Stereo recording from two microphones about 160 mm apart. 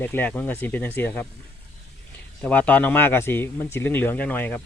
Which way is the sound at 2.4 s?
10° left (ahead or behind).